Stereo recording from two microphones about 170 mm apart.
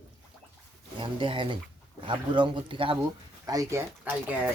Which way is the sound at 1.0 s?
30° right (ahead or behind).